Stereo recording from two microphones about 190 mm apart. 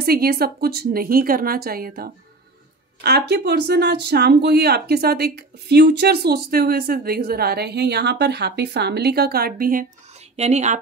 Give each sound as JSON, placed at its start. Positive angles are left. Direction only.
{"t": 0.0, "sound": "a woman's voice", "side_deg": -55}
{"t": 10.3, "sound": "speech", "side_deg": -35}